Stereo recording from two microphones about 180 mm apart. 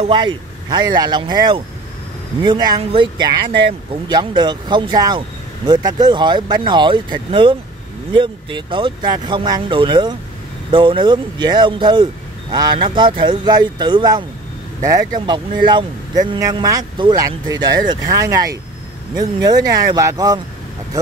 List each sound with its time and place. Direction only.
0.0 s speech: 25° right (ahead or behind)